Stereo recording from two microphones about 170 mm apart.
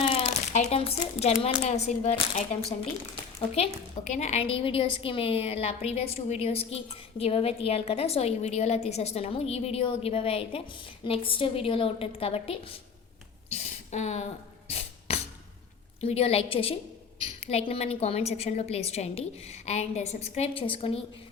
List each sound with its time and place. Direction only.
0.0 s speech: 35° left (ahead or behind)
4.2 s a woman's voice: 40° left (ahead or behind)
14.7 s music: 35° left (ahead or behind)
16.0 s a woman's voice: 35° left (ahead or behind)